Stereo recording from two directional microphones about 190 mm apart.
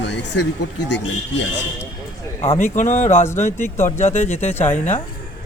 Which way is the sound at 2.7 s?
40° left (ahead or behind).